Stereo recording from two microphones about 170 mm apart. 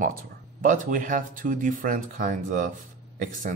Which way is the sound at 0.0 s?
55° right (ahead or behind).